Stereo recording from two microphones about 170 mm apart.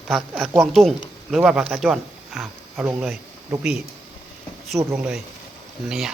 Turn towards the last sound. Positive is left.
turn(degrees=-5)  # may be behind; listen again after turning